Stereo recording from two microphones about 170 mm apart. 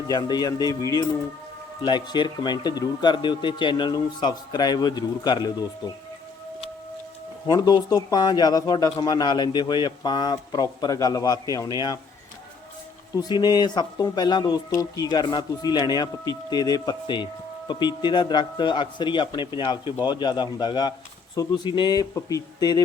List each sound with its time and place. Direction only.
0.1 s speech: 25° left (ahead or behind)
7.4 s speech: 25° left (ahead or behind)
13.1 s speech: 25° left (ahead or behind)